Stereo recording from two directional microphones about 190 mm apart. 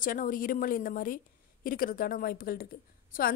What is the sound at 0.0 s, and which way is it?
Speech, 45° left (ahead or behind).